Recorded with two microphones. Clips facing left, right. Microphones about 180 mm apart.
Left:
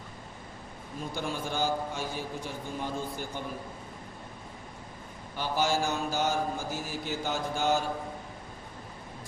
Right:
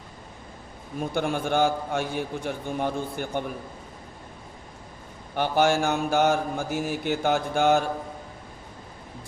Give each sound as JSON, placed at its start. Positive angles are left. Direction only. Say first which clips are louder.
{"t": 0.9, "sound": "mantra", "louder": "right 8 dB", "side_deg": -60}
{"t": 5.3, "sound": "mantra", "louder": "right 7 dB", "side_deg": -65}